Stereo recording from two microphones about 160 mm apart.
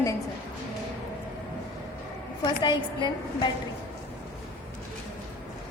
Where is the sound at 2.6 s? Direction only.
30° left (ahead or behind).